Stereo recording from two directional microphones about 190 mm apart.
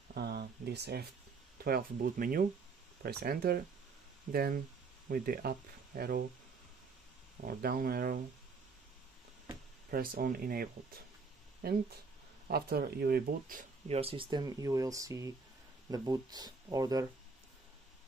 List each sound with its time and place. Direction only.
0.1 s a sound: 55° right (ahead or behind)
1.6 s speech: 50° right (ahead or behind)
7.4 s speech: 50° right (ahead or behind)
9.8 s speech: 50° right (ahead or behind)
13.8 s speech: 30° right (ahead or behind)